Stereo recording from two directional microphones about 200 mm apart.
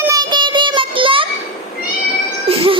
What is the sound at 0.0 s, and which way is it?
Child singing, 20° right (ahead or behind).